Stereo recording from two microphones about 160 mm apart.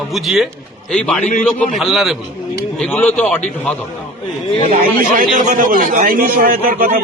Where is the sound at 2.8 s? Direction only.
10° left (ahead or behind).